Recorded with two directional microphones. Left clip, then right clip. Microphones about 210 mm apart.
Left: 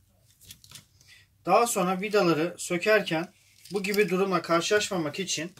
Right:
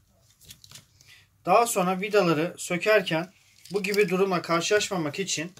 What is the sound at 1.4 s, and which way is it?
Speech, 35° right (ahead or behind).